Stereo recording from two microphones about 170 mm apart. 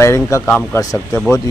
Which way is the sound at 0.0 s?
15° left (ahead or behind).